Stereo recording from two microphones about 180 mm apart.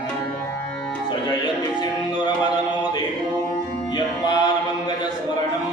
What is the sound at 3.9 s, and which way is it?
Music, 25° left (ahead or behind).